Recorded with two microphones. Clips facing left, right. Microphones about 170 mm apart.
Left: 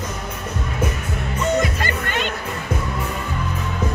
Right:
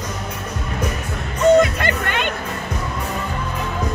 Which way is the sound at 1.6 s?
60° right (ahead or behind).